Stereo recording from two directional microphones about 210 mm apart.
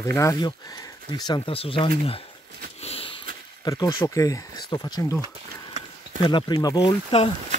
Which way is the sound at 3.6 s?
20° left (ahead or behind).